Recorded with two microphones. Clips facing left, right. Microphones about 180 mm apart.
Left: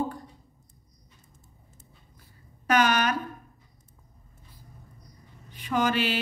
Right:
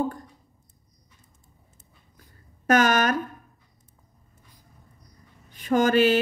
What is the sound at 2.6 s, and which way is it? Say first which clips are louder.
Speech: right 3 dB; 45° right (ahead or behind).